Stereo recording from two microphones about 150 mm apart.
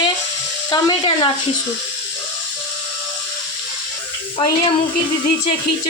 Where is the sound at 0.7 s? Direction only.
30° left (ahead or behind).